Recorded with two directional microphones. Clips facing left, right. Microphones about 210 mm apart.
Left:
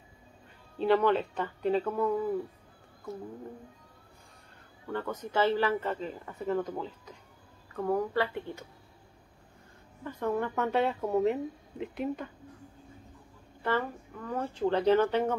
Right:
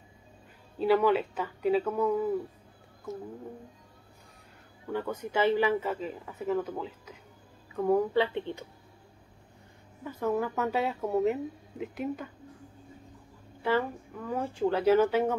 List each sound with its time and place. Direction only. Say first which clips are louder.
0.7 s speech: right 1 dB; 5° right (ahead or behind)
4.8 s speech: right 2 dB; 10° right (ahead or behind)
7.7 s speech: right 4 dB; 15° right (ahead or behind)
10.0 s speech: right 1 dB; 5° right (ahead or behind)
13.6 s speech: right 3 dB; 10° right (ahead or behind)